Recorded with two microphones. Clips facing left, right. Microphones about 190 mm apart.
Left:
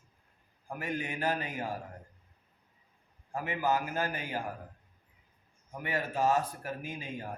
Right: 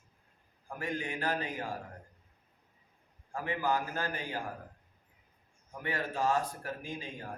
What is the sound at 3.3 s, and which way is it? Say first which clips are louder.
A man's voice: left 1 dB; 20° left (ahead or behind).